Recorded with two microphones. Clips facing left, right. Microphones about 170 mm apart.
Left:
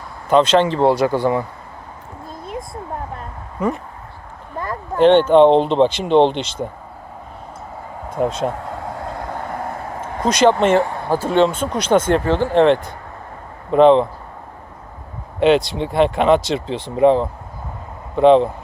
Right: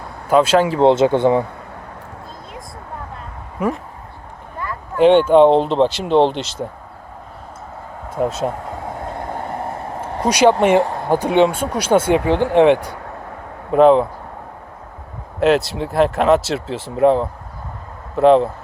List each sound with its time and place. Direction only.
0.3 s speech: 5° right (ahead or behind)
0.8 s speech: 20° right (ahead or behind)
3.6 s speech: 10° right (ahead or behind)
4.9 s speech: 10° right (ahead or behind)
8.1 s speech: 5° right (ahead or behind)
10.2 s speech: 10° right (ahead or behind)
15.4 s speech: centre (ahead or behind)